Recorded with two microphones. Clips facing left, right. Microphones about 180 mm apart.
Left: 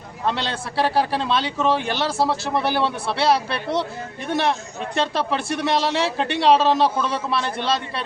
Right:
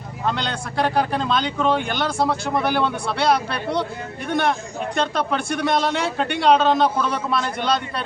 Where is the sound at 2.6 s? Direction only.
30° left (ahead or behind).